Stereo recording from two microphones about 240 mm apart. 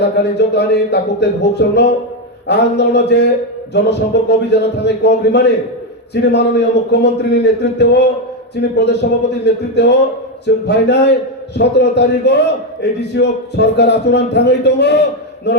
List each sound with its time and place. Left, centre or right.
0.2 s a man's voice: left